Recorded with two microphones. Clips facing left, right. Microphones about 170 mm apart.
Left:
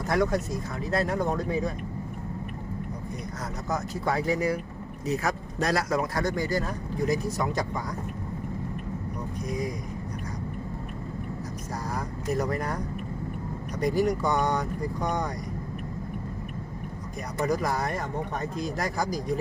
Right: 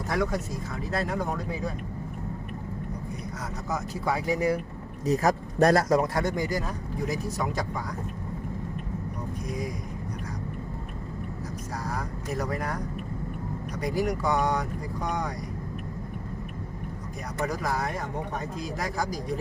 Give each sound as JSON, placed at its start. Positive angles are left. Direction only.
{"t": 0.1, "sound": "speech", "side_deg": 0}
{"t": 3.7, "sound": "speech", "side_deg": -10}
{"t": 5.0, "sound": "speech", "side_deg": -40}
{"t": 6.1, "sound": "speech", "side_deg": -20}
{"t": 11.9, "sound": "speech", "side_deg": 0}
{"t": 13.8, "sound": "speech", "side_deg": -5}
{"t": 17.4, "sound": "speech", "side_deg": 0}